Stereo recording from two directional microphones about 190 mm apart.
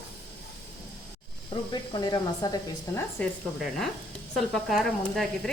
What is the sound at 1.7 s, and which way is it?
Speech, 20° left (ahead or behind).